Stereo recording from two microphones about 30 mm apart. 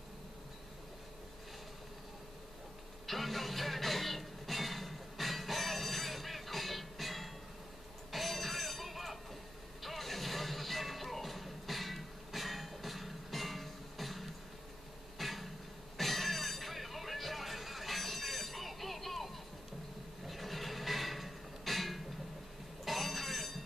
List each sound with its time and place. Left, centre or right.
3.1 s music: centre
8.1 s bicycle bell: centre
9.8 s music: centre
15.1 s a sound: centre
16.0 s vehicle: centre
20.2 s a sound: centre